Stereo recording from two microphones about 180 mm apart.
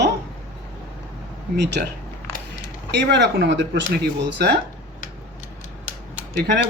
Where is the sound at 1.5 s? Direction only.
70° right (ahead or behind).